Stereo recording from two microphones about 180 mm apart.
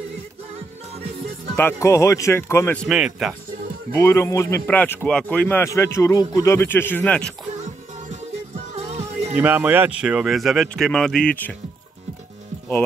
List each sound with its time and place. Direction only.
1.6 s speech: 15° left (ahead or behind)
2.9 s speech: 5° right (ahead or behind)
3.9 s speech: 15° left (ahead or behind)
7.5 s music: 40° right (ahead or behind)
9.4 s speech: 10° right (ahead or behind)